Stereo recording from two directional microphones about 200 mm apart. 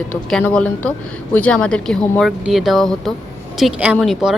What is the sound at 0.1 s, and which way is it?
A woman's voice, 5° left (ahead or behind).